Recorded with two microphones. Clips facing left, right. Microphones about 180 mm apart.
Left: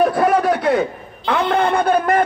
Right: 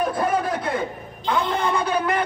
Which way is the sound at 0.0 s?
70° left (ahead or behind).